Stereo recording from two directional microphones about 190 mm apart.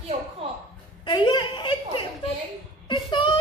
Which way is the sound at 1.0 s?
25° left (ahead or behind).